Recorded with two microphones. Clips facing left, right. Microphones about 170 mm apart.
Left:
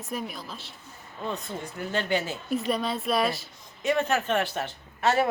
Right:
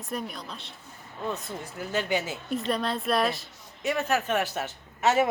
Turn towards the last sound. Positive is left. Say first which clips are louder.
# right 1 dB
turn(degrees=-10)  # may be behind; listen again after turning